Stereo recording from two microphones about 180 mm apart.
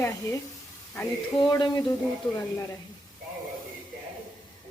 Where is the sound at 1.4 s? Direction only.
25° left (ahead or behind).